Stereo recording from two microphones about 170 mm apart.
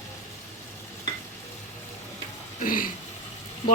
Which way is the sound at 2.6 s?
55° left (ahead or behind).